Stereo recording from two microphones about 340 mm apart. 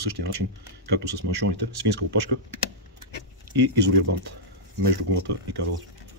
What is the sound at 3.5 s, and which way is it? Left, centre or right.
Speech, right.